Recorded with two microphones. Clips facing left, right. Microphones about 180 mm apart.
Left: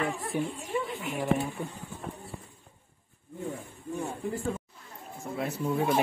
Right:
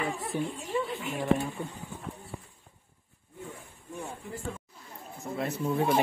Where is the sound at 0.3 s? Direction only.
10° left (ahead or behind).